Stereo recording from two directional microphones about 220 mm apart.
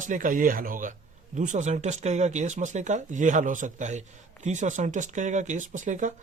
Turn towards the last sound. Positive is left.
turn(degrees=-35)  # may be behind; listen again after turning